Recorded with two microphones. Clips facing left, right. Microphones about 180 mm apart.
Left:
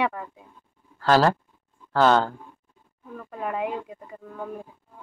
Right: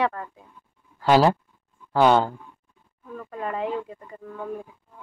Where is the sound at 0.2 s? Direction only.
10° left (ahead or behind).